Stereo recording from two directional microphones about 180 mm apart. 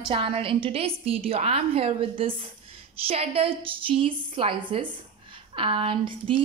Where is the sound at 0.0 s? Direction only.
30° right (ahead or behind).